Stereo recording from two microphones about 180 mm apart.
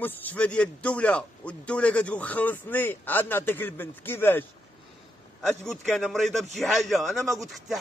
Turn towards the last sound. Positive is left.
turn(degrees=0)  # may be behind; listen again after turning